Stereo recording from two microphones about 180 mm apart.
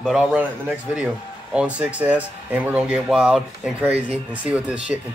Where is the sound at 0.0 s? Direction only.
5° right (ahead or behind).